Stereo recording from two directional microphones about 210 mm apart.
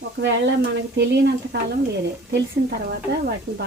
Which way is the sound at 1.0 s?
55° right (ahead or behind).